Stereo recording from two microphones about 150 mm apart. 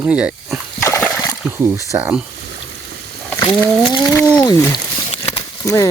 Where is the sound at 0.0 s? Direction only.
5° right (ahead or behind).